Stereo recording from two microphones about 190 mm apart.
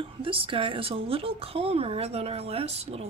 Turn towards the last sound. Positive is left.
turn(degrees=-35)  # may be behind; listen again after turning